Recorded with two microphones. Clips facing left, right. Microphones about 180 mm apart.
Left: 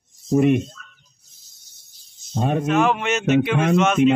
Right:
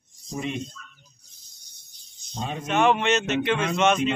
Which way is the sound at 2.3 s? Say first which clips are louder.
Left 10 dB; 55° left (ahead or behind).